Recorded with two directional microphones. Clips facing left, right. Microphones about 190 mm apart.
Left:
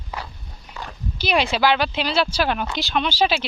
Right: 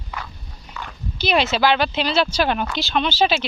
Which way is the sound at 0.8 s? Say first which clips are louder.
Even; 35° left (ahead or behind).